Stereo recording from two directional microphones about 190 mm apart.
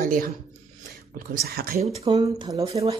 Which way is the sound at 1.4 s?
55° right (ahead or behind).